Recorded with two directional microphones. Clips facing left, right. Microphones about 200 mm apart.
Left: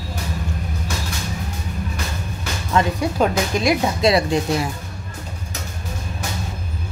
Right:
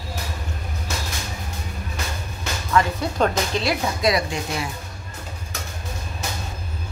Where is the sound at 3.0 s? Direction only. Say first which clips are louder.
Left 3 dB; 15° left (ahead or behind).